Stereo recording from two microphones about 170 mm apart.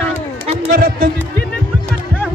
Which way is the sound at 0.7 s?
65° right (ahead or behind).